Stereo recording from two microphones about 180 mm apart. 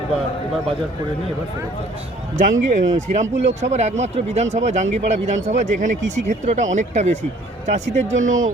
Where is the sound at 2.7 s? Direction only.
40° right (ahead or behind).